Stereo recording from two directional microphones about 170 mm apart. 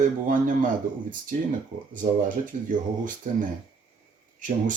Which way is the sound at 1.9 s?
50° right (ahead or behind).